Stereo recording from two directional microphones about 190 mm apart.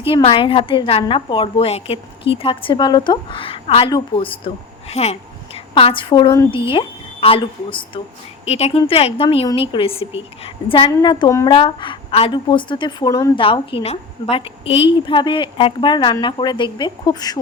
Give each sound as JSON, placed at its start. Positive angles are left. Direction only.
{"t": 0.1, "sound": "a woman's voice", "side_deg": 30}